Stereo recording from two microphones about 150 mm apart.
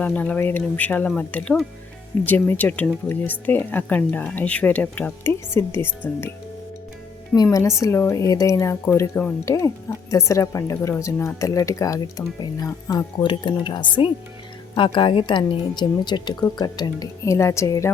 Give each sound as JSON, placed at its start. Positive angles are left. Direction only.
{"t": 0.0, "sound": "speech", "side_deg": 10}
{"t": 7.4, "sound": "speech", "side_deg": 20}